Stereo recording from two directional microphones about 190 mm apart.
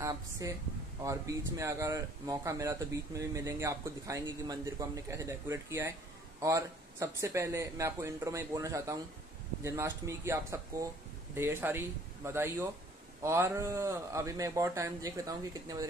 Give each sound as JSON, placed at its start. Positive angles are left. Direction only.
{"t": 0.0, "sound": "speech", "side_deg": -15}